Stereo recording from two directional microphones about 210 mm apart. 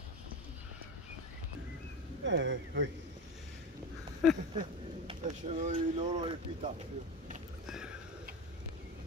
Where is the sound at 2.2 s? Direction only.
60° right (ahead or behind).